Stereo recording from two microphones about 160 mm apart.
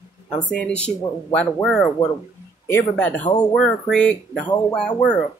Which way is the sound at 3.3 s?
30° left (ahead or behind).